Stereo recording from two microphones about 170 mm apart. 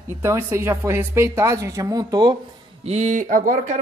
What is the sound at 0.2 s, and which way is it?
Speech, 15° right (ahead or behind).